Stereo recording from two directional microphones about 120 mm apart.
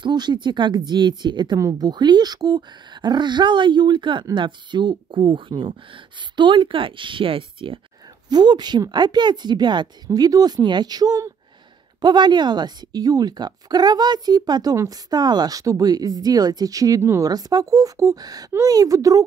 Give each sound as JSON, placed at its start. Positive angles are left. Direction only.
{"t": 0.0, "sound": "a woman's voice", "side_deg": -40}
{"t": 8.3, "sound": "a woman's voice", "side_deg": -35}